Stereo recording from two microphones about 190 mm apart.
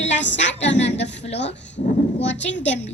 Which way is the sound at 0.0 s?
75° left (ahead or behind).